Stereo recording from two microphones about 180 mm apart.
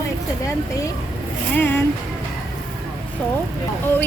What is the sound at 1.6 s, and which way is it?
Speech, 10° left (ahead or behind).